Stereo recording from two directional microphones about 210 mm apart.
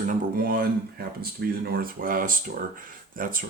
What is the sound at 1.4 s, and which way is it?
Speech, 50° right (ahead or behind).